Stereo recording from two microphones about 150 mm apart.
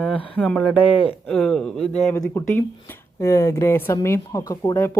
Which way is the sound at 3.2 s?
20° left (ahead or behind).